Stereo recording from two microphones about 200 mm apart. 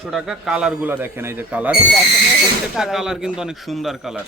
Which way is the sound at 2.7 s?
5° right (ahead or behind).